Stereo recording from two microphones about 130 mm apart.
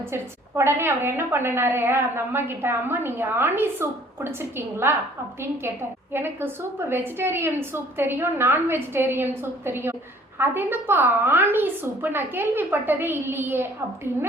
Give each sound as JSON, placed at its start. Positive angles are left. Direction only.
{"t": 0.1, "sound": "a woman's voice", "side_deg": -20}
{"t": 6.1, "sound": "a woman's voice", "side_deg": -15}